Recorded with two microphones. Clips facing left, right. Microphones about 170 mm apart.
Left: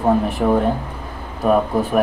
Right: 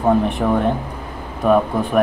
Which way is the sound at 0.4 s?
5° left (ahead or behind).